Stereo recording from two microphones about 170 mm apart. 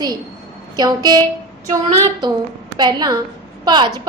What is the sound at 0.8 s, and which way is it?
Speech, 25° right (ahead or behind).